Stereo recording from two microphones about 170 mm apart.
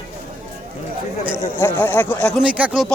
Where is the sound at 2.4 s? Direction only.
5° right (ahead or behind).